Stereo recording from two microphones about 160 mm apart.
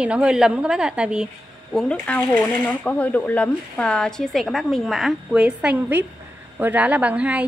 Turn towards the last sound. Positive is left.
turn(degrees=-10)  # may be behind; listen again after turning